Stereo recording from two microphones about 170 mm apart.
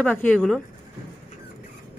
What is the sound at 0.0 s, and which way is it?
Speech, 10° left (ahead or behind).